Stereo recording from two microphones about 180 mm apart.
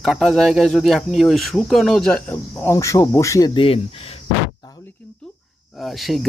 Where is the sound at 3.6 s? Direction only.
30° left (ahead or behind).